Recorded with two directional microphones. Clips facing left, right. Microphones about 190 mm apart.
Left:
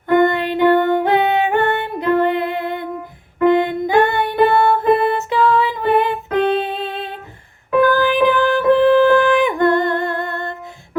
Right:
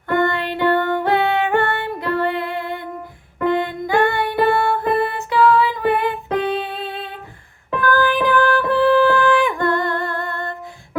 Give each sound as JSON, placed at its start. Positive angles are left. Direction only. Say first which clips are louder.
{"t": 0.1, "sound": "music", "louder": "left 5 dB", "side_deg": 20}